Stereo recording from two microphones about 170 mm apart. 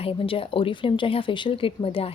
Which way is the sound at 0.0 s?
35° left (ahead or behind).